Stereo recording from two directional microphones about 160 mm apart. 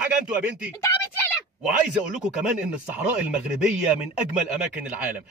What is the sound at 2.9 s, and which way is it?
Speech, 10° right (ahead or behind).